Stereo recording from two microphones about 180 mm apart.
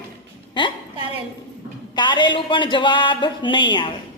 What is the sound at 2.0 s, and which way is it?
Speech, 25° left (ahead or behind).